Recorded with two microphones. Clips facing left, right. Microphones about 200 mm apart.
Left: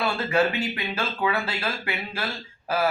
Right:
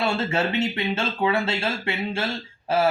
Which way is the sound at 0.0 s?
25° right (ahead or behind).